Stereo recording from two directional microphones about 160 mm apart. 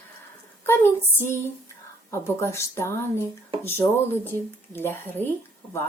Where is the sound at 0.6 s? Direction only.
15° left (ahead or behind).